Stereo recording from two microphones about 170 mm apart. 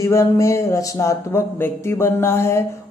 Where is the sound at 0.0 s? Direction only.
15° left (ahead or behind).